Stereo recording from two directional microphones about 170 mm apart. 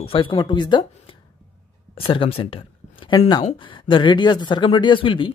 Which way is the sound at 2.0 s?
30° left (ahead or behind).